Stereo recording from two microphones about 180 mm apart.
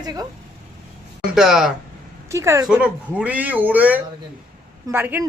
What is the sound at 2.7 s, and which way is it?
Speech, 5° right (ahead or behind).